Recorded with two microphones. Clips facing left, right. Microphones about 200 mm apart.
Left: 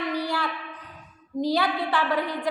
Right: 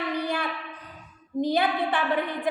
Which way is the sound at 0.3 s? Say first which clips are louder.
Even; 20° right (ahead or behind).